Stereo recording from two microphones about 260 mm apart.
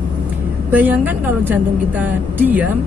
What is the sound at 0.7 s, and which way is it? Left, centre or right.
A woman's voice, centre.